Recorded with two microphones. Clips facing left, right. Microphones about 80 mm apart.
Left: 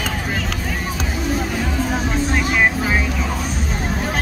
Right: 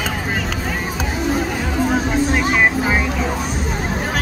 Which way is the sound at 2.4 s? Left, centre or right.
Centre.